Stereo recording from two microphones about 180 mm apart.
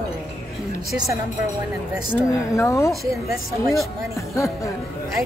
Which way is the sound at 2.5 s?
15° left (ahead or behind).